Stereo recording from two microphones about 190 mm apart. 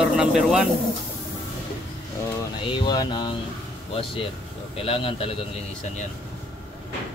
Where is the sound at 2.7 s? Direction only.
25° left (ahead or behind).